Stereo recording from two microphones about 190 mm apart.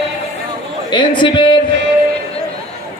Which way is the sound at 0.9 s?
25° left (ahead or behind).